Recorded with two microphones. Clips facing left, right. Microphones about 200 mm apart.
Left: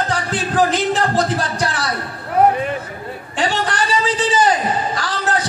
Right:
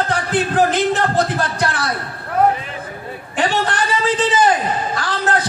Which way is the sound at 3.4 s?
55° right (ahead or behind).